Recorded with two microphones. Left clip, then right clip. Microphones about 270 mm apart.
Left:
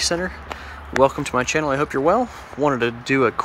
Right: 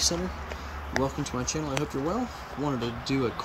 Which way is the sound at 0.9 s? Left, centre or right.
Centre.